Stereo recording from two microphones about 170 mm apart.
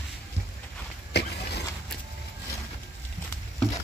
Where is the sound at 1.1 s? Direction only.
75° left (ahead or behind).